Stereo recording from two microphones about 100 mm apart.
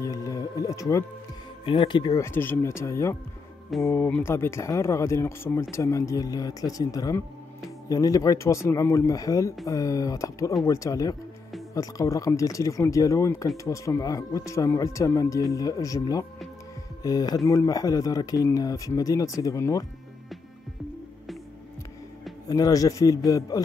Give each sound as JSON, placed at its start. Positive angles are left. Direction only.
{"t": 0.0, "sound": "music", "side_deg": 35}
{"t": 1.7, "sound": "speech", "side_deg": 50}
{"t": 2.1, "sound": "speech", "side_deg": 25}
{"t": 22.5, "sound": "speech", "side_deg": 35}